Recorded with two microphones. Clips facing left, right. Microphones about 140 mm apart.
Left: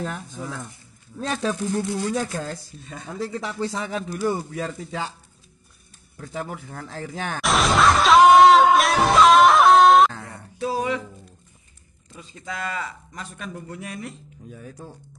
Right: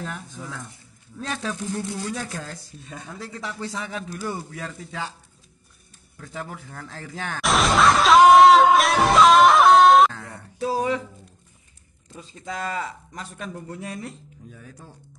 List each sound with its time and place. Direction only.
0.0 s speech: 40° left (ahead or behind)
6.3 s speech: 20° left (ahead or behind)
7.4 s music: centre (ahead or behind)
10.7 s speech: 35° right (ahead or behind)
12.1 s speech: 35° right (ahead or behind)
14.5 s speech: 25° left (ahead or behind)